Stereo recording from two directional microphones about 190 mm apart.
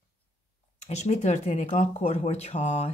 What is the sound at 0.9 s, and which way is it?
Speech, 35° left (ahead or behind).